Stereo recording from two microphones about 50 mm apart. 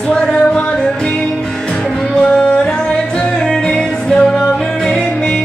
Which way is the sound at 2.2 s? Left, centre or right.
Centre.